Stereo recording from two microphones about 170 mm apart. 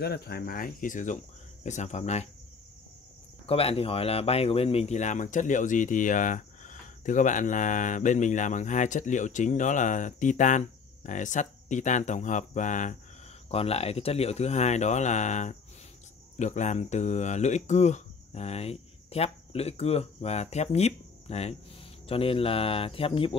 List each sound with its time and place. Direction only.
0.0 s speech: 65° left (ahead or behind); by 2.2 s 40° left (ahead or behind)
3.4 s speech: 35° left (ahead or behind)
13.5 s speech: 35° left (ahead or behind)